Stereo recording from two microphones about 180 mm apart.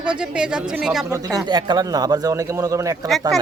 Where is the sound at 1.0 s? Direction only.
20° right (ahead or behind).